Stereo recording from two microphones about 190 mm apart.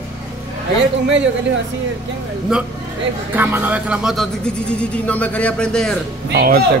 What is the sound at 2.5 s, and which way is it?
Speech, 5° right (ahead or behind).